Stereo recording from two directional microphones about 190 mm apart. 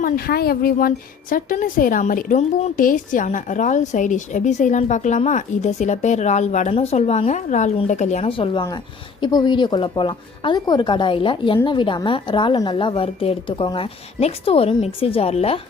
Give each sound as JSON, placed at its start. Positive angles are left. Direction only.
{"t": 0.0, "sound": "a woman's voice", "side_deg": 55}